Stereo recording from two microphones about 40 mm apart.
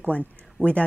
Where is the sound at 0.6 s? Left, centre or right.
Right.